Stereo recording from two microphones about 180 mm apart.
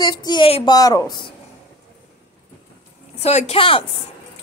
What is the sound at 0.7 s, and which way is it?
Speech, 20° left (ahead or behind).